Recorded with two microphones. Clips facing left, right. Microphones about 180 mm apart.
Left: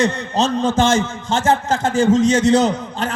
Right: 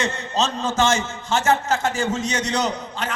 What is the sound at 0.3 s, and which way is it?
Speech, 55° left (ahead or behind).